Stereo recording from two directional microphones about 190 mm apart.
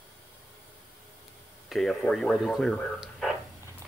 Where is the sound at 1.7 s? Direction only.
Centre (ahead or behind).